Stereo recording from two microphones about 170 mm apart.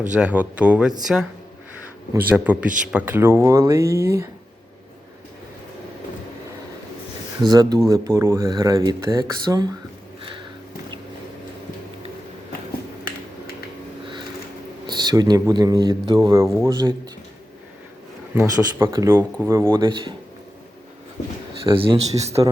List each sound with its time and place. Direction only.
0.1 s speech: 5° right (ahead or behind)
7.4 s speech: 25° right (ahead or behind)
14.8 s speech: 25° right (ahead or behind)
18.3 s speech: 15° right (ahead or behind)
21.2 s speech: 20° left (ahead or behind)
21.6 s speech: 30° right (ahead or behind)